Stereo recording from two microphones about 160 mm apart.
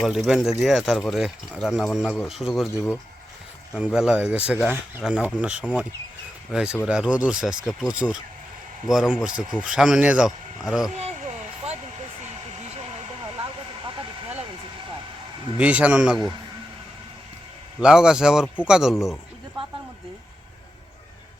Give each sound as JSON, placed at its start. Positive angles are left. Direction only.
{"t": 0.0, "sound": "speech", "side_deg": 0}
{"t": 2.7, "sound": "speech", "side_deg": 15}
{"t": 3.8, "sound": "speech", "side_deg": -5}
{"t": 10.9, "sound": "a sound", "side_deg": -45}
{"t": 15.5, "sound": "speech", "side_deg": -10}
{"t": 17.7, "sound": "speech", "side_deg": -5}
{"t": 18.4, "sound": "speech", "side_deg": 10}
{"t": 18.7, "sound": "speech", "side_deg": -5}